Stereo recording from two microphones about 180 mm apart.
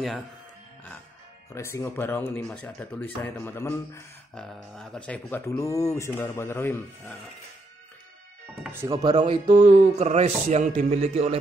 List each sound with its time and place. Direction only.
1.5 s speech: 15° left (ahead or behind)
8.8 s speech: 20° right (ahead or behind)
9.7 s speech: 40° right (ahead or behind)